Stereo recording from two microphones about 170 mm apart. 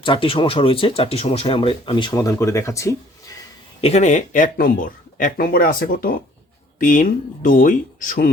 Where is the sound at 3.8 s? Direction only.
40° left (ahead or behind).